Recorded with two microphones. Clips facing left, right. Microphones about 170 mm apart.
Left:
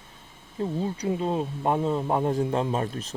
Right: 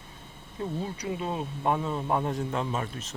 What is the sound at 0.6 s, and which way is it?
Speech, 30° left (ahead or behind).